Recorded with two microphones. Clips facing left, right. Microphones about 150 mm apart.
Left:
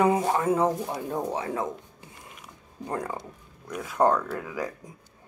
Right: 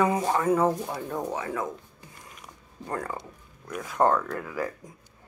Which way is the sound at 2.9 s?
20° left (ahead or behind).